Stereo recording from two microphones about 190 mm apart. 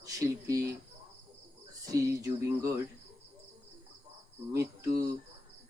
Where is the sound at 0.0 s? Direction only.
15° right (ahead or behind).